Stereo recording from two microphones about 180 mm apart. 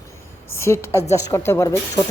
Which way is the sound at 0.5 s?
15° left (ahead or behind).